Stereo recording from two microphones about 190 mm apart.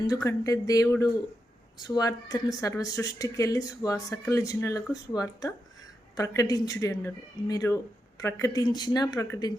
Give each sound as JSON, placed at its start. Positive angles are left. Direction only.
{"t": 0.3, "sound": "speech", "side_deg": 15}